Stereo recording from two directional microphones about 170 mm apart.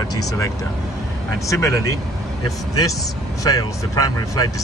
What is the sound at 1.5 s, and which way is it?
Speech, 15° left (ahead or behind).